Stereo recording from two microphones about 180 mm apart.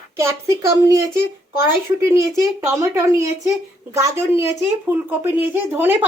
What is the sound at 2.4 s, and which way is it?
Speech, 15° right (ahead or behind).